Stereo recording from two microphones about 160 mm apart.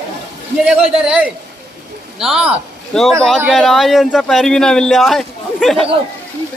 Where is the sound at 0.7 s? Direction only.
5° right (ahead or behind).